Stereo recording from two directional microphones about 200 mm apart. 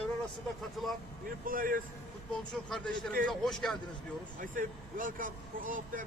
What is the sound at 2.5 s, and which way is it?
Speech, 5° left (ahead or behind).